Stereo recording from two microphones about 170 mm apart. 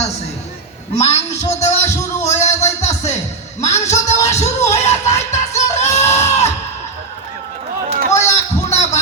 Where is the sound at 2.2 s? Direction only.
40° left (ahead or behind).